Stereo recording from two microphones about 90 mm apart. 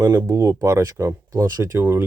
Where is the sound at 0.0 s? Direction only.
25° right (ahead or behind).